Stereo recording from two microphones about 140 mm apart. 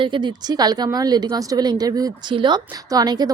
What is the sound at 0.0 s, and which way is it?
Speech, 35° right (ahead or behind).